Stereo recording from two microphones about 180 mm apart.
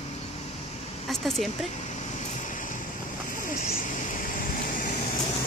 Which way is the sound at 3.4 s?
45° left (ahead or behind).